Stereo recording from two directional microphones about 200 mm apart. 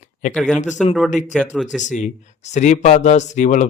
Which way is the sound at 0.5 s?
35° left (ahead or behind).